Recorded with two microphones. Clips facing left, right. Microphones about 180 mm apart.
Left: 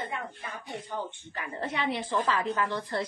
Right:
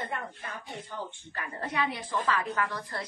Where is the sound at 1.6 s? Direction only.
25° left (ahead or behind).